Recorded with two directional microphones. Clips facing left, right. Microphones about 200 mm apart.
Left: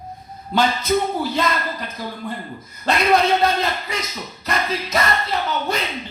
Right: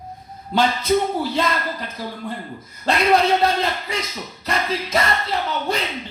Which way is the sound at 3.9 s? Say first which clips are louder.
Right 1 dB; 30° right (ahead or behind).